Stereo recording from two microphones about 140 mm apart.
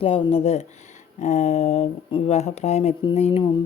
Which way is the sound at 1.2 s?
60° left (ahead or behind).